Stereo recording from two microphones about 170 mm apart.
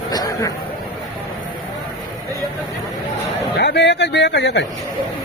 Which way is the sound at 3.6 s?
90° left.